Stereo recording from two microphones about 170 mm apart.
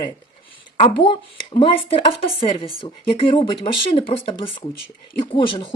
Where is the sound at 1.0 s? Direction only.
30° left (ahead or behind).